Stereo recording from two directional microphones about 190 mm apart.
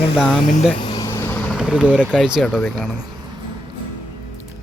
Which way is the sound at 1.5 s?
5° right (ahead or behind).